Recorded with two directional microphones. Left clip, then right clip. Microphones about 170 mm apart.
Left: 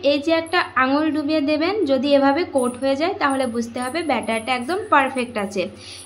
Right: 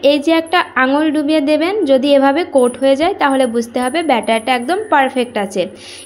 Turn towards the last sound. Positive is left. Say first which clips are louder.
# right 7 dB
turn(degrees=-30)  # may be behind; listen again after turning